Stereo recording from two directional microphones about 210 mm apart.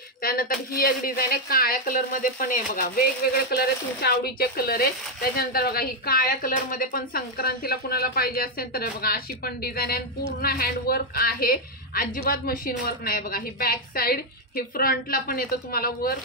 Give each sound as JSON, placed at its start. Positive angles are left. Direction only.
{"t": 0.2, "sound": "a woman's voice", "side_deg": 45}